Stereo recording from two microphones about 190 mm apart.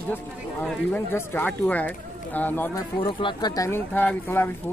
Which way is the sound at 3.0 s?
25° left (ahead or behind).